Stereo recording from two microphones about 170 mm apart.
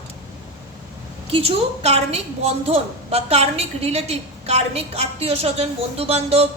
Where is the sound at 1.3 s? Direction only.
35° right (ahead or behind).